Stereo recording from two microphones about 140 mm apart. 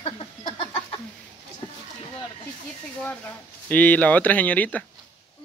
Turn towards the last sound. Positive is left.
turn(degrees=10)  # may be behind; listen again after turning